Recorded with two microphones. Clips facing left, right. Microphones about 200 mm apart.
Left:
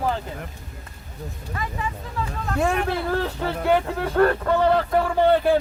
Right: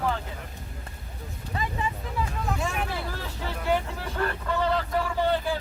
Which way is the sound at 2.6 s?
60° left (ahead or behind).